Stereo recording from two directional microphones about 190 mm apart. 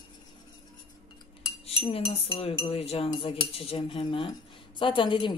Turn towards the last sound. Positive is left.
turn(degrees=25)  # may be behind; listen again after turning